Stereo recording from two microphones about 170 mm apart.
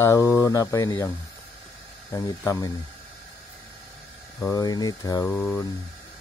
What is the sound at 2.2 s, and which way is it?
Speech, 20° left (ahead or behind).